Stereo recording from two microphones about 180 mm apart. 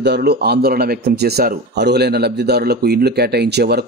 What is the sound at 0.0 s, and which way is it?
Speech, 65° right (ahead or behind).